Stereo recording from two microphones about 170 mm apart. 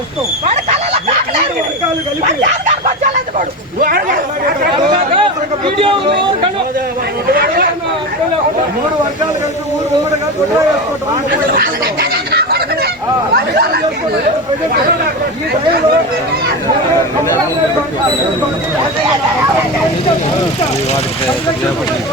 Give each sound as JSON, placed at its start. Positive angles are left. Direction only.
{"t": 2.4, "sound": "a sound", "side_deg": -45}
{"t": 5.1, "sound": "chatter", "side_deg": -30}
{"t": 7.3, "sound": "chatter", "side_deg": -60}
{"t": 11.3, "sound": "fowl", "side_deg": -60}
{"t": 13.3, "sound": "speech", "side_deg": -70}